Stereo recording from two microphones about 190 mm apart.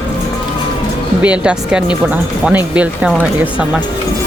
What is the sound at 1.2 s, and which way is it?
Speech, 5° right (ahead or behind).